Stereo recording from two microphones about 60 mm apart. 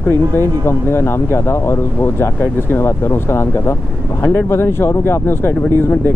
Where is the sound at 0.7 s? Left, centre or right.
Left.